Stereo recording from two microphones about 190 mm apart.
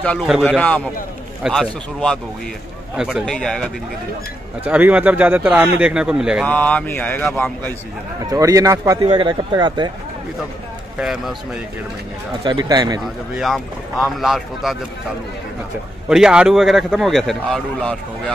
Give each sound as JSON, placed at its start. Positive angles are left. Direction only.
{"t": 0.0, "sound": "a man's voice", "side_deg": 5}
{"t": 4.6, "sound": "a man's voice", "side_deg": -10}
{"t": 6.4, "sound": "speech", "side_deg": 10}
{"t": 8.3, "sound": "a man's voice", "side_deg": -15}
{"t": 11.0, "sound": "a man's voice", "side_deg": -5}
{"t": 12.4, "sound": "a man's voice", "side_deg": -20}
{"t": 13.0, "sound": "a man's voice", "side_deg": 0}
{"t": 16.1, "sound": "a man's voice", "side_deg": -5}